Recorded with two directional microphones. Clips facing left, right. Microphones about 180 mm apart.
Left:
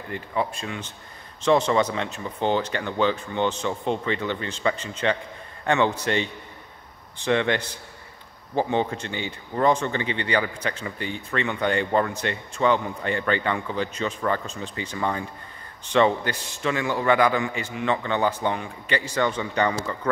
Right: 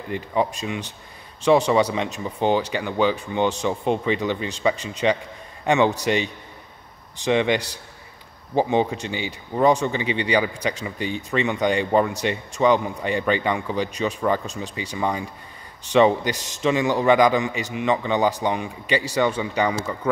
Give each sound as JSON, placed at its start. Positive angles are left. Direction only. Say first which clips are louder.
{"t": 0.1, "sound": "speech", "louder": "right 4 dB", "side_deg": -20}